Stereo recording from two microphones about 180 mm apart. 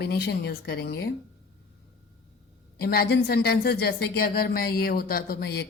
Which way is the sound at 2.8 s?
55° left (ahead or behind).